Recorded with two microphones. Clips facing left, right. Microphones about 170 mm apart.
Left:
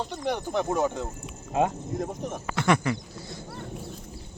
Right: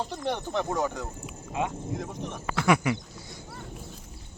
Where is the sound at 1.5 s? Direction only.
45° left (ahead or behind).